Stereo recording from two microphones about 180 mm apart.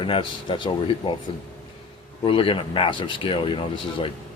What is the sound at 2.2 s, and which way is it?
Speech, 30° left (ahead or behind).